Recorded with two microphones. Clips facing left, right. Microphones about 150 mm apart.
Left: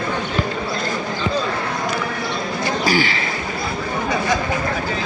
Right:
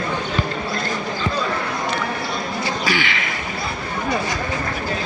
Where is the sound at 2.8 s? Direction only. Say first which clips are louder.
Left 6 dB; 40° left (ahead or behind).